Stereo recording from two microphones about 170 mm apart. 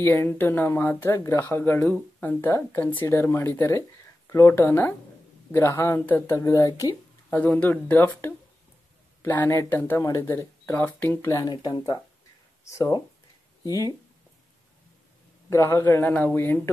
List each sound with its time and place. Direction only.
0.0 s speech: 15° left (ahead or behind)
15.5 s speech: 15° left (ahead or behind)